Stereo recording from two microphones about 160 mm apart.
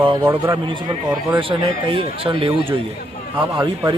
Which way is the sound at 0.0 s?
30° right (ahead or behind).